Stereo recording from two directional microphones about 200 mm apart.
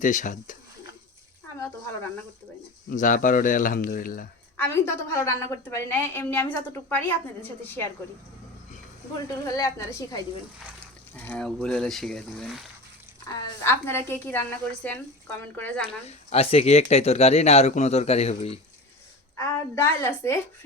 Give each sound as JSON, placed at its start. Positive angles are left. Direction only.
{"t": 0.0, "sound": "speech", "side_deg": 40}
{"t": 2.9, "sound": "speech", "side_deg": 40}
{"t": 4.5, "sound": "a woman's voice", "side_deg": 10}
{"t": 9.6, "sound": "a woman's voice", "side_deg": 15}
{"t": 16.0, "sound": "speech", "side_deg": 30}
{"t": 19.4, "sound": "a woman's voice", "side_deg": 10}